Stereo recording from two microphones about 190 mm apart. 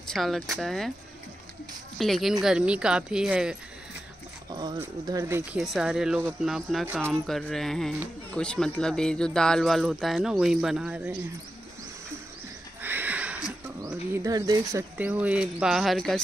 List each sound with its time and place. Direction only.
0.1 s speech: centre (ahead or behind)
2.0 s speech: centre (ahead or behind)
4.5 s dog: 20° right (ahead or behind)
5.0 s speech: 20° right (ahead or behind)
5.5 s speech: centre (ahead or behind)
12.8 s neigh: 10° right (ahead or behind)
13.8 s speech: 15° right (ahead or behind); by 16.2 s centre (ahead or behind)